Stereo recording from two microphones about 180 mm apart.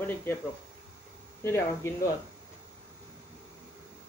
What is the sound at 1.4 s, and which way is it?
Speech, 15° left (ahead or behind).